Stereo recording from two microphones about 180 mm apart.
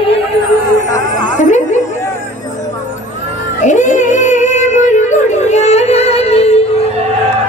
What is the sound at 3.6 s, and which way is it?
Music, 45° left (ahead or behind).